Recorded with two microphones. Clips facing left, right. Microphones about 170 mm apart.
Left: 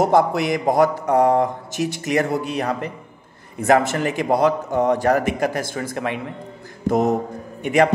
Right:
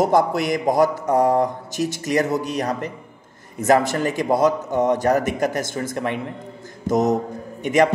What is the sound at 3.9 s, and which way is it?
Speech, 40° right (ahead or behind).